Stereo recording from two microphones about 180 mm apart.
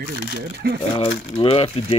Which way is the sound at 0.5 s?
60° right (ahead or behind).